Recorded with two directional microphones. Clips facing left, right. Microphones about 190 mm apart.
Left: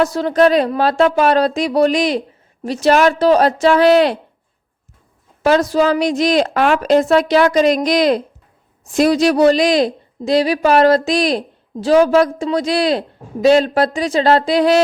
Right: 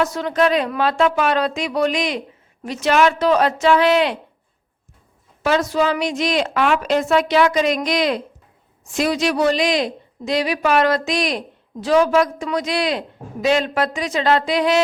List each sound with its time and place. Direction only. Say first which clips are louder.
0.0 s a woman's voice: left 5 dB; 35° left (ahead or behind)
5.4 s a woman's voice: left 5 dB; 40° left (ahead or behind)